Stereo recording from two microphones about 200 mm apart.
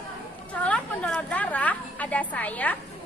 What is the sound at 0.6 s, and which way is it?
A woman's voice, 5° left (ahead or behind).